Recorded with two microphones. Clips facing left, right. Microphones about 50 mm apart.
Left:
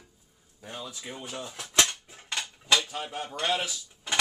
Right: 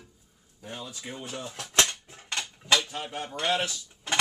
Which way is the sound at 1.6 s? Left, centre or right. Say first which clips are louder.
Even; centre.